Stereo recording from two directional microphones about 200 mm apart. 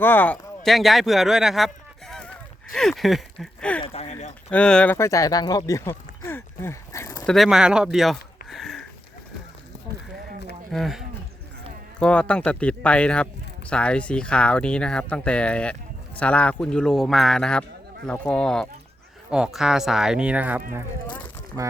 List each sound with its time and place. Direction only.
0.0 s speech: 10° left (ahead or behind)
2.7 s a sound: centre (ahead or behind)
3.8 s speech: 30° left (ahead or behind)
4.5 s speech: 5° left (ahead or behind)
7.3 s speech: centre (ahead or behind)
10.7 s speech: centre (ahead or behind); by 21.7 s 15° right (ahead or behind)